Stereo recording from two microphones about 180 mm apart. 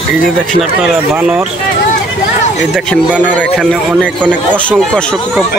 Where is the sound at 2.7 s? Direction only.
Centre (ahead or behind).